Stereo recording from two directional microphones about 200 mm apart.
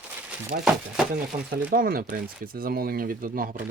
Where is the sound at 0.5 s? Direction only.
50° right (ahead or behind).